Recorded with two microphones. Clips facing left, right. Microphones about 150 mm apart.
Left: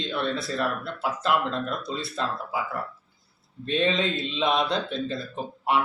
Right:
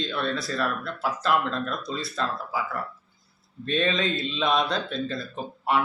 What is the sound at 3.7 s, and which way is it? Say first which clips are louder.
Speech: left 1 dB; 25° left (ahead or behind).